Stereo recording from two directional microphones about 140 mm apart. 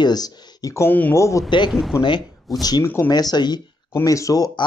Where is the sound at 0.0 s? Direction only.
30° left (ahead or behind).